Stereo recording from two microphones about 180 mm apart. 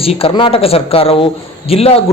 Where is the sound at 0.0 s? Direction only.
30° left (ahead or behind).